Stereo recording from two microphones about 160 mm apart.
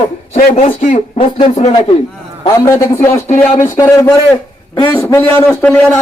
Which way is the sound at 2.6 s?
15° left (ahead or behind).